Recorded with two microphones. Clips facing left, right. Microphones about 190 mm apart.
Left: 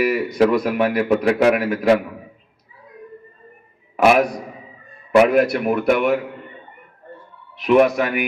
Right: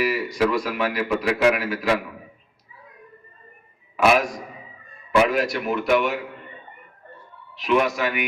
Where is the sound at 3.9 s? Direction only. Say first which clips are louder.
Left 4 dB; 60° left (ahead or behind).